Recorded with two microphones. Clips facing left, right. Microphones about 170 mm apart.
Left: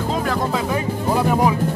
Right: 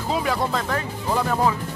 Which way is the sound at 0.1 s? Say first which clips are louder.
Even; centre (ahead or behind).